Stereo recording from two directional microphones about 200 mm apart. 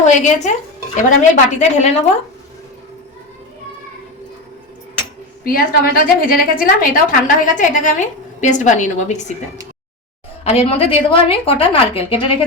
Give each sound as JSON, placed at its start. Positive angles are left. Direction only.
{"t": 0.0, "sound": "a woman's voice", "side_deg": 35}
{"t": 5.4, "sound": "a woman's voice", "side_deg": 45}
{"t": 10.4, "sound": "a woman's voice", "side_deg": 30}